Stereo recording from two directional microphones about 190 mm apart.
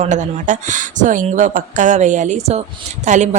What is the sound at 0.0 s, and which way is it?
Speech, 40° right (ahead or behind).